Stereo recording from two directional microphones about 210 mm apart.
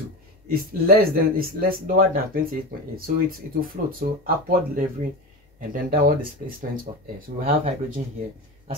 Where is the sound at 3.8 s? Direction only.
40° right (ahead or behind).